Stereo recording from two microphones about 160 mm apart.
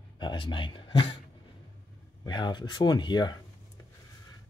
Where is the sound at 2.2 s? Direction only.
30° left (ahead or behind).